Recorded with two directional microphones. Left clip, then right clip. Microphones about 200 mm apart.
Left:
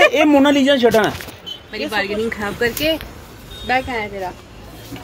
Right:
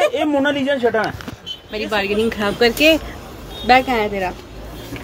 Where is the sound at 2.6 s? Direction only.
40° right (ahead or behind).